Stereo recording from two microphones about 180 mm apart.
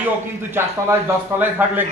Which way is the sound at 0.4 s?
10° right (ahead or behind).